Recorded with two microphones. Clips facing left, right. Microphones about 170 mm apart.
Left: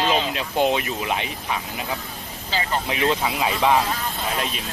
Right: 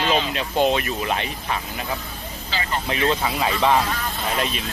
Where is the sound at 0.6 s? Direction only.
15° left (ahead or behind).